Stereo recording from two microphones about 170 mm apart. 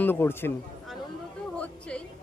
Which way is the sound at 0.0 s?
15° left (ahead or behind).